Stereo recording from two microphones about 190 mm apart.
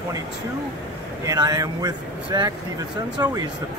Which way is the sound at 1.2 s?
20° right (ahead or behind).